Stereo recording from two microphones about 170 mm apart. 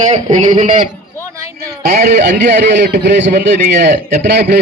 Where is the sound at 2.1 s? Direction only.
80° right.